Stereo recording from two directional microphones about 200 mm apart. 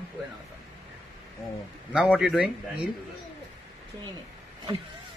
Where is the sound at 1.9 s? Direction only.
5° right (ahead or behind).